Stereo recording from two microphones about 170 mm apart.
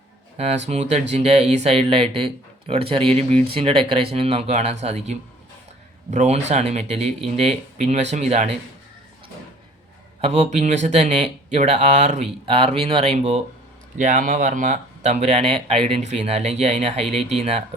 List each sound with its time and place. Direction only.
0.3 s speech: 40° right (ahead or behind)
10.2 s speech: 40° right (ahead or behind)
14.0 s speech: 50° right (ahead or behind)